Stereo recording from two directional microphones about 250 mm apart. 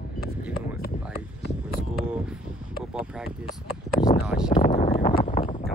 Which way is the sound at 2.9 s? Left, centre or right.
Centre.